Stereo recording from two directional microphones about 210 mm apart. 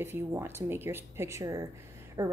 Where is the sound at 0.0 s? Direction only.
10° right (ahead or behind).